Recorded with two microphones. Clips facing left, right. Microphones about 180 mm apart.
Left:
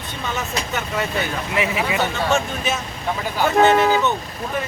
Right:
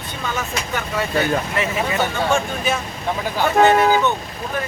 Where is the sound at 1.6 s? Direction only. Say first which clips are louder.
Even; 15° left (ahead or behind).